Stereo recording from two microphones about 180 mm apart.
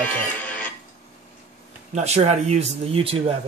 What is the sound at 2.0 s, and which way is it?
Speech, 35° right (ahead or behind).